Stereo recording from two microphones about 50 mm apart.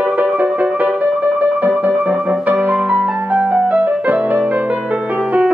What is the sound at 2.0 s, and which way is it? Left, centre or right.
Music, centre.